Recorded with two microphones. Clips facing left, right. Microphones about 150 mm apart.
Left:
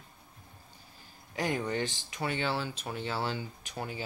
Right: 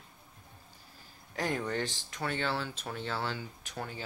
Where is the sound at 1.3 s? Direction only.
5° left (ahead or behind).